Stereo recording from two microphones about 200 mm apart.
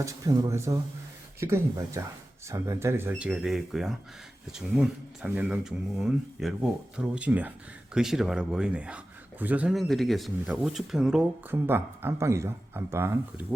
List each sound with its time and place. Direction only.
0.0 s speech: 15° right (ahead or behind)